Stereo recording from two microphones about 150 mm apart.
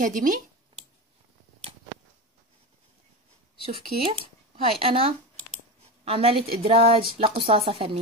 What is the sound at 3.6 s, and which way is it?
Speech, 35° right (ahead or behind).